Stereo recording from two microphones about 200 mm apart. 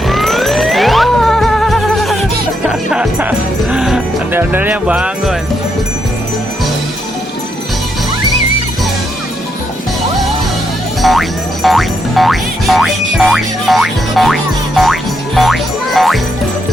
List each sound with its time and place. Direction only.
0.1 s music: centre (ahead or behind)
11.0 s music: centre (ahead or behind)